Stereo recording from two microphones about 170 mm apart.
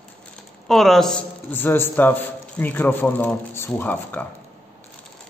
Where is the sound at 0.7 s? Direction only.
Centre (ahead or behind).